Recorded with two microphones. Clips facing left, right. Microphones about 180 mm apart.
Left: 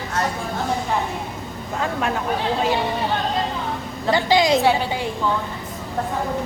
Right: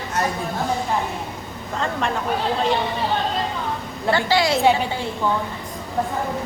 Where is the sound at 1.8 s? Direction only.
5° left (ahead or behind).